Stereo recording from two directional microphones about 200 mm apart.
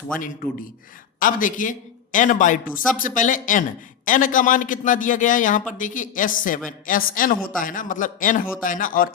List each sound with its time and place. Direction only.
1.2 s a man's voice: 40° left (ahead or behind)